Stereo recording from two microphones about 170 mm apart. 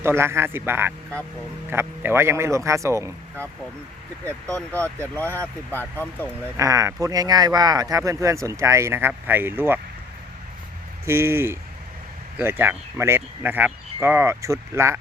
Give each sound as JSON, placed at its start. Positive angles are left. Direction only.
{"t": 0.0, "sound": "speech", "side_deg": -15}
{"t": 4.3, "sound": "speech", "side_deg": 10}
{"t": 6.6, "sound": "speech", "side_deg": -20}
{"t": 11.0, "sound": "speech", "side_deg": -15}